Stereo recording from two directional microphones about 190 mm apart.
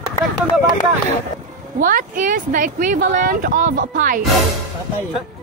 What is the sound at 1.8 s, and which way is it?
Speech, 45° right (ahead or behind).